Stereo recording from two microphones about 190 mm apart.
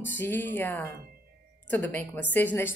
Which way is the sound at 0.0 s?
10° left (ahead or behind).